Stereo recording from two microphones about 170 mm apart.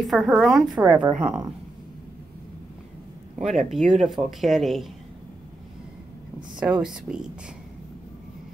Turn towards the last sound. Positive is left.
turn(degrees=-5)  # may be behind; listen again after turning